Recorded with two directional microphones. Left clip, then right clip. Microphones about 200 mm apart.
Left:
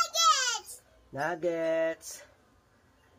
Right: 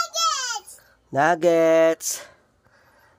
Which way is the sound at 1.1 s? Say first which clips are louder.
Right 13 dB; 55° right (ahead or behind).